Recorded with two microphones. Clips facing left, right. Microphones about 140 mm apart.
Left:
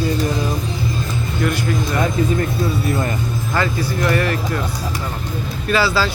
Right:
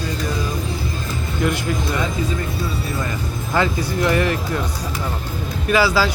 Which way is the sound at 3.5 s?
15° right (ahead or behind).